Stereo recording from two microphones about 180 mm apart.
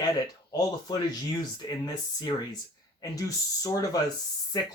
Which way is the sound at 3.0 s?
20° left (ahead or behind).